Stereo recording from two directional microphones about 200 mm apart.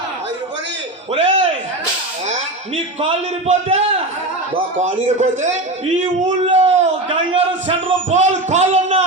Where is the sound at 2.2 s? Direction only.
30° right (ahead or behind).